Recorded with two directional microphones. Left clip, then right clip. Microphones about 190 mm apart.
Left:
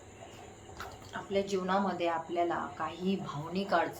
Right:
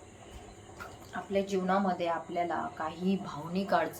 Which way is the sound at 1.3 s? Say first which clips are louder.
Right 1 dB; 10° right (ahead or behind).